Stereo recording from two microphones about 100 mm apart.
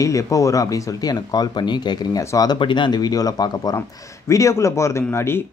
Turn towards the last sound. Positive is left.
turn(degrees=25)  # may be behind; listen again after turning